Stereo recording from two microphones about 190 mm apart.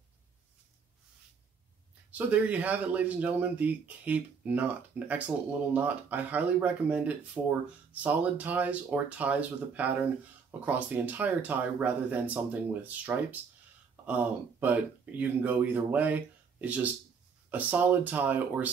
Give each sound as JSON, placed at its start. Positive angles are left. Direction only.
{"t": 2.0, "sound": "speech", "side_deg": -10}